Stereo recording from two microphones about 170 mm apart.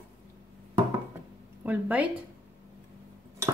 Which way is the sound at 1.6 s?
10° right (ahead or behind).